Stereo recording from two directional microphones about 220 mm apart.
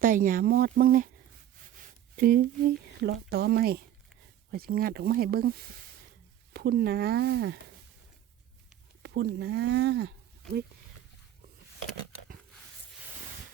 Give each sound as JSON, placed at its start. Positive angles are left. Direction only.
{"t": 0.0, "sound": "speech", "side_deg": -40}
{"t": 2.1, "sound": "speech", "side_deg": -40}
{"t": 9.0, "sound": "speech", "side_deg": -50}